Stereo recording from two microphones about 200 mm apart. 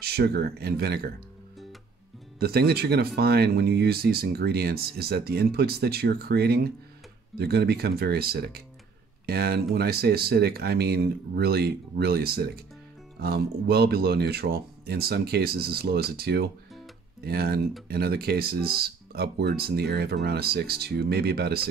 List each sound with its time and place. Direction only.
0.0 s speech: 50° right (ahead or behind)
2.4 s speech: 50° right (ahead or behind)